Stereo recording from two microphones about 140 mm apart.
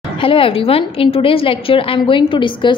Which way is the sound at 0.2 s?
40° left (ahead or behind).